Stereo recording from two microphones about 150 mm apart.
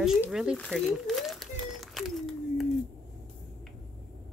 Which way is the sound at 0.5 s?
Centre (ahead or behind).